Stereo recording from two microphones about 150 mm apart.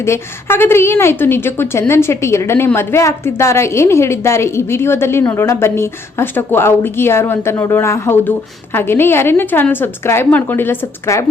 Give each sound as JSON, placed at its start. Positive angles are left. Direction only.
{"t": 0.0, "sound": "a woman's voice", "side_deg": 15}